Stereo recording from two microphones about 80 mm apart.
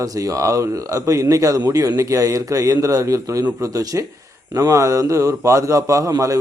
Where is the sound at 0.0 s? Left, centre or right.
Right.